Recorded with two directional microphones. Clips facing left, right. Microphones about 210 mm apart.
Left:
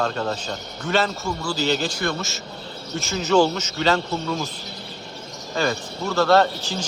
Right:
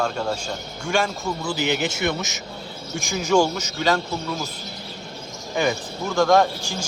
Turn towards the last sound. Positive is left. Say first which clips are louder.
# even
turn(degrees=-10)  # may be behind; listen again after turning